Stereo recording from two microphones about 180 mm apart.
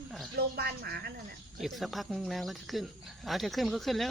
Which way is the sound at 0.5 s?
60° right (ahead or behind).